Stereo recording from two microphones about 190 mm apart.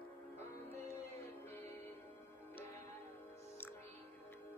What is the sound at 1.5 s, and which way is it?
Music, 10° left (ahead or behind).